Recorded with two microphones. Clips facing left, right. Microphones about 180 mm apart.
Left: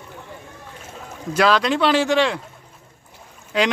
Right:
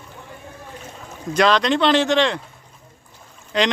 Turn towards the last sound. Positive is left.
turn(degrees=5)  # may be behind; listen again after turning